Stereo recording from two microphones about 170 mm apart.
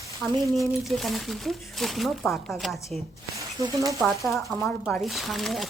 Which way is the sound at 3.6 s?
20° right (ahead or behind).